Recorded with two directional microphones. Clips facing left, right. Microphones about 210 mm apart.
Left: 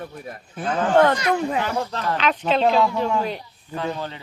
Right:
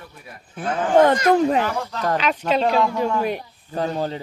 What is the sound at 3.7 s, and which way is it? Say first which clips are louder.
Speech: right 4 dB; 40° right (ahead or behind).